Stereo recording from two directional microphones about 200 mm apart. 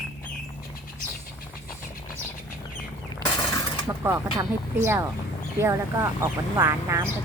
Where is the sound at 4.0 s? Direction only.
15° right (ahead or behind).